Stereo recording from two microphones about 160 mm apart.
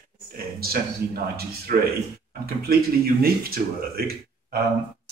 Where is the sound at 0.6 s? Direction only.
70° right (ahead or behind).